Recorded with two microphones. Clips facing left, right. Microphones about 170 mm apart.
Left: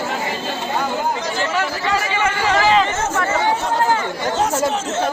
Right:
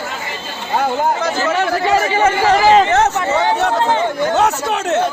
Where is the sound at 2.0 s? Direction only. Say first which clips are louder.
Right 6 dB; 40° right (ahead or behind).